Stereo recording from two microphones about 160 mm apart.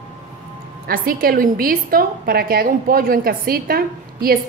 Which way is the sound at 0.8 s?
65° right (ahead or behind).